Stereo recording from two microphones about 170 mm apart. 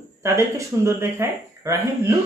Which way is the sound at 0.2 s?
15° right (ahead or behind).